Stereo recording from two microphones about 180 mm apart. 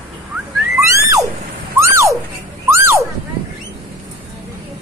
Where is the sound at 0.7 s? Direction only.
15° right (ahead or behind).